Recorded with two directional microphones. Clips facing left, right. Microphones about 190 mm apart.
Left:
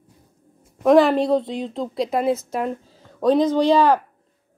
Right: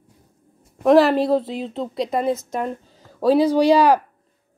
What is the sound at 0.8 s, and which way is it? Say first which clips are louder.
A woman's voice: even; centre (ahead or behind).